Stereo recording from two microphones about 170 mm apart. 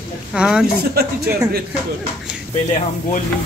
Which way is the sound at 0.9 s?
65° right (ahead or behind).